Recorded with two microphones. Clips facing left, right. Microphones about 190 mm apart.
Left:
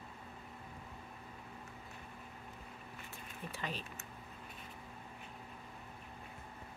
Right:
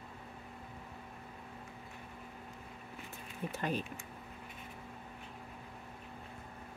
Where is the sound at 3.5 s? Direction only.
50° right (ahead or behind).